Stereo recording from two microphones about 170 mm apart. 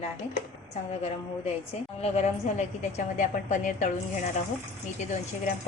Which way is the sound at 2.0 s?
40° left (ahead or behind).